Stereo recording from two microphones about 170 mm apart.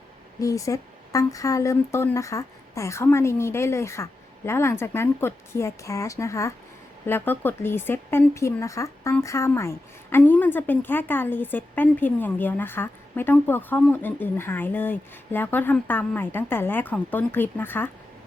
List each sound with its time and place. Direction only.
0.3 s speech: 20° left (ahead or behind)